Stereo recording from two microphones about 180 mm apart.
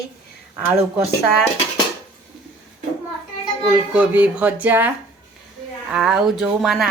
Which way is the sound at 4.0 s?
10° right (ahead or behind).